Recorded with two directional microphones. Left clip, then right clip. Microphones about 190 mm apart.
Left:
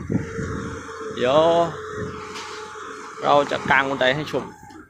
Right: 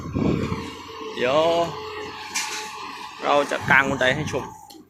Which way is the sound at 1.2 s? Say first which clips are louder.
Left 3 dB; 25° left (ahead or behind).